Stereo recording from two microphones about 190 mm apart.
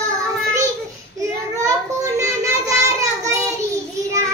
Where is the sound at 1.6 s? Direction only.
15° right (ahead or behind).